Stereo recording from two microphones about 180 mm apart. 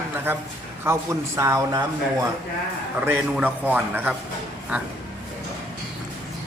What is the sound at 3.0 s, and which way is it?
A man's voice, 10° right (ahead or behind).